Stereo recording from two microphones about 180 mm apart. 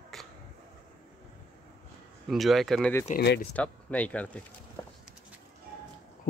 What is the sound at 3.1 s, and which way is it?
Speech, 45° left (ahead or behind).